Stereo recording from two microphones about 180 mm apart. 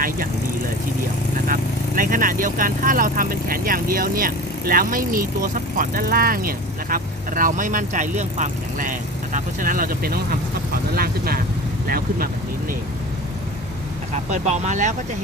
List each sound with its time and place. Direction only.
2.0 s speech: 50° right (ahead or behind)
14.3 s speech: 40° right (ahead or behind)